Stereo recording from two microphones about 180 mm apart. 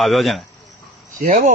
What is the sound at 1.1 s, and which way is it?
Speech, 45° right (ahead or behind).